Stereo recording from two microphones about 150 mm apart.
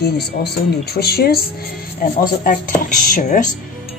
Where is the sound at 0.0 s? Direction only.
90° left.